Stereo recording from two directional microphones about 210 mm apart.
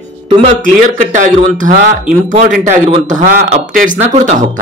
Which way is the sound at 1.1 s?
40° right (ahead or behind).